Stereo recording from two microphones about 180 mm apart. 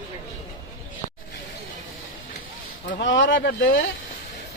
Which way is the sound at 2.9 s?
80° left.